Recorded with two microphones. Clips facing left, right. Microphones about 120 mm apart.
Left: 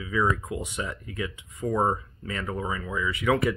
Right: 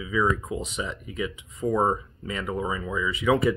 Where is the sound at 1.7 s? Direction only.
5° right (ahead or behind).